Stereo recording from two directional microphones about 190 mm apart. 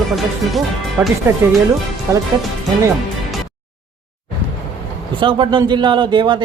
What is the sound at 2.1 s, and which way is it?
Speech, 15° right (ahead or behind).